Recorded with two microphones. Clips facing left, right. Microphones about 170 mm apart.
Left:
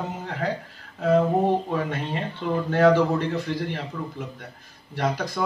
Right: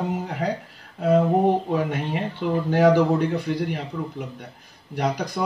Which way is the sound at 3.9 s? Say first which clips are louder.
Right 3 dB; 15° right (ahead or behind).